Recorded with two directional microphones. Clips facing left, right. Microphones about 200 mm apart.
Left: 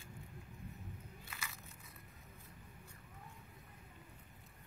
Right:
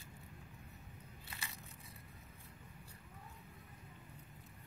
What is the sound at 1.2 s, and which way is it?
Crunch, 30° right (ahead or behind).